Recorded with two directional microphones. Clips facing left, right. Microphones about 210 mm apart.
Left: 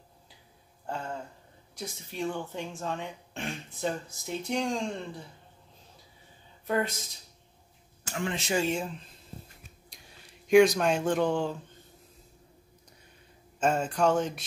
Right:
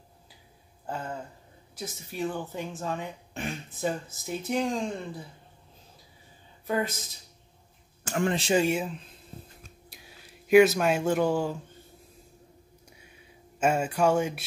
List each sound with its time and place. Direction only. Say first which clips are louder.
0.8 s a sound: right 1 dB; 5° right (ahead or behind)
1.8 s speech: right 2 dB; 5° right (ahead or behind)
6.7 s speech: even; centre (ahead or behind)
8.0 s speech: right 6 dB; 50° right (ahead or behind)
8.5 s a sound: right 4 dB; 10° right (ahead or behind)
13.6 s speech: right 1 dB; 10° right (ahead or behind)